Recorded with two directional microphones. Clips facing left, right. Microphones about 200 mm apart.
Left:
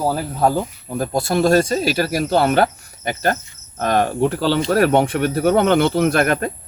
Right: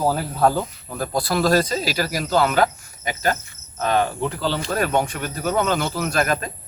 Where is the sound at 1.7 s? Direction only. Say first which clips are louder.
Left 5 dB; 50° left (ahead or behind).